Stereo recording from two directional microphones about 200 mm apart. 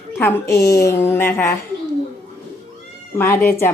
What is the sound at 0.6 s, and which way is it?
Speech, 15° left (ahead or behind).